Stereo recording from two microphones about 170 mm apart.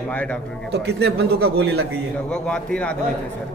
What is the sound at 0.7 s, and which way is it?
Speech, 75° right (ahead or behind).